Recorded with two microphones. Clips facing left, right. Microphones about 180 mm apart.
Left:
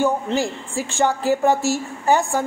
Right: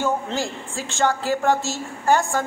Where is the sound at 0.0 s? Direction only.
15° left (ahead or behind).